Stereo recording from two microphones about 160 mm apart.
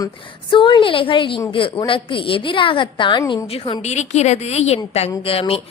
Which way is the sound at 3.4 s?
35° left (ahead or behind).